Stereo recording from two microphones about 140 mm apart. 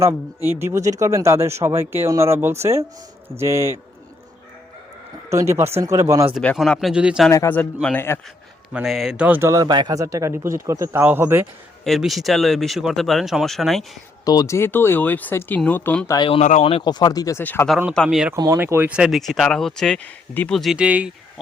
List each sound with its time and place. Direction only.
0.6 s speech: 20° right (ahead or behind)
5.3 s speech: 20° right (ahead or behind)
6.6 s speech: centre (ahead or behind)
7.3 s speech: 15° left (ahead or behind)
7.9 s speech: 15° left (ahead or behind)
8.7 s a man's voice: 5° right (ahead or behind)
11.9 s speech: centre (ahead or behind)
14.3 s speech: 25° left (ahead or behind)
16.0 s speech: 35° left (ahead or behind)
16.4 s speech: 55° left (ahead or behind)
16.8 s speech: 30° left (ahead or behind)
17.4 s speech: 15° left (ahead or behind)
18.5 s speech: 15° right (ahead or behind); by 20.6 s 10° left (ahead or behind)
20.6 s a man's voice: 5° right (ahead or behind)